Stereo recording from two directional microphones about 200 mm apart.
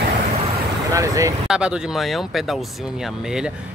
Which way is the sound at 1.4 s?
5° right (ahead or behind).